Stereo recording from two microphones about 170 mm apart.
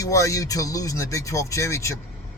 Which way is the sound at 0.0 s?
20° left (ahead or behind).